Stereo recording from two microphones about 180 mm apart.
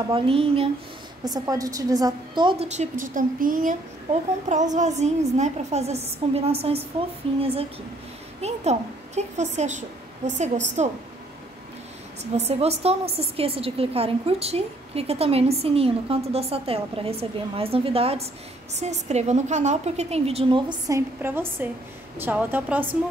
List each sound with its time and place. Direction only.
0.1 s a woman's voice: 30° right (ahead or behind)
1.2 s a woman's voice: 20° right (ahead or behind)
2.7 s a woman's voice: 45° right (ahead or behind)
12.2 s a woman's voice: 35° right (ahead or behind)
21.2 s a woman's voice: 10° right (ahead or behind)